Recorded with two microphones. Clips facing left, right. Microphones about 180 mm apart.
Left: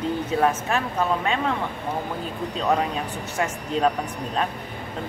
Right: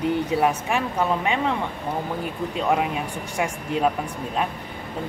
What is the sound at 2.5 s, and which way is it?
Speech, 10° right (ahead or behind).